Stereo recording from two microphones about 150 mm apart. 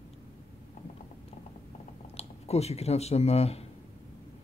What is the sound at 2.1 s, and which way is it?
Speech, 45° left (ahead or behind).